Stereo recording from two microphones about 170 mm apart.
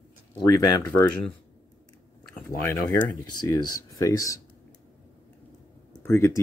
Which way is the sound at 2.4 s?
15° left (ahead or behind).